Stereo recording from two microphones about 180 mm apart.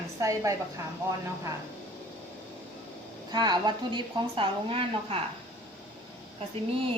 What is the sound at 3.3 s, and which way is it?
A woman's voice, 25° right (ahead or behind).